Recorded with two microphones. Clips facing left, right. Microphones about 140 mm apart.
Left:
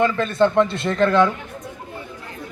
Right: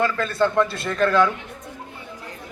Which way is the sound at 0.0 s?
20° left (ahead or behind).